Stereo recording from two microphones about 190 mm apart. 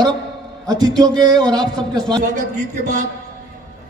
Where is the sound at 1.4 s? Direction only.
5° left (ahead or behind).